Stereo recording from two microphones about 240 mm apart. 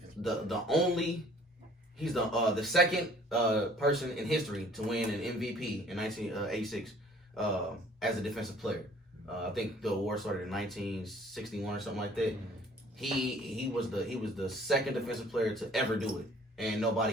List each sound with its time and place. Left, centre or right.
0.2 s speech: centre
7.9 s speech: centre